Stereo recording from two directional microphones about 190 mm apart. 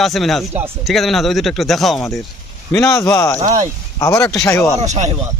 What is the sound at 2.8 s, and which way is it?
Speech, 15° left (ahead or behind).